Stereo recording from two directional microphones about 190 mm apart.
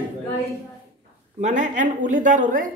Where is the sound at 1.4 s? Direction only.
40° right (ahead or behind).